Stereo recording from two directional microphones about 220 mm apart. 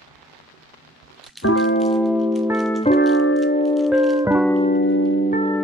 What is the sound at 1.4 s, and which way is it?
Music, 60° left (ahead or behind).